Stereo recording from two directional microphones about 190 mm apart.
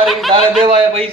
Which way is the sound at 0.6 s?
30° right (ahead or behind).